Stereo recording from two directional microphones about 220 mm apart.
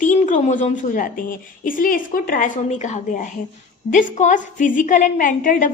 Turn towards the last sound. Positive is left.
turn(degrees=35)  # may be behind; listen again after turning